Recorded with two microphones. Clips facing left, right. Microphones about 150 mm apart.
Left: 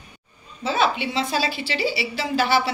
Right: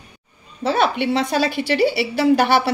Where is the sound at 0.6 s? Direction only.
60° right (ahead or behind).